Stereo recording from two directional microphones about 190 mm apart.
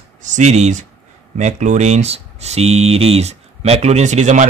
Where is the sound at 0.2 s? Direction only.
40° right (ahead or behind).